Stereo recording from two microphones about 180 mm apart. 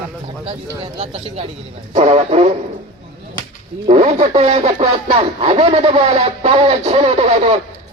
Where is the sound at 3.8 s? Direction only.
40° right (ahead or behind).